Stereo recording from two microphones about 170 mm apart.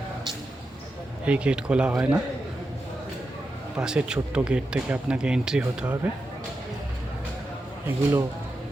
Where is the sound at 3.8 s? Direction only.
5° right (ahead or behind).